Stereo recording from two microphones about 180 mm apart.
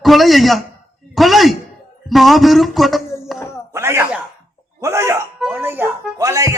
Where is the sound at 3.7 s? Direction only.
15° right (ahead or behind).